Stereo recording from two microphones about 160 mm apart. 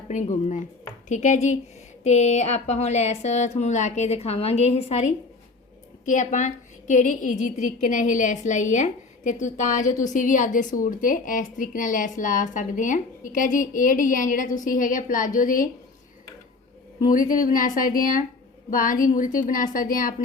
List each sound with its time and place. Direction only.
0.1 s speech: 50° left (ahead or behind)
6.1 s a woman's voice: 50° left (ahead or behind)
17.1 s a woman's voice: 60° left (ahead or behind)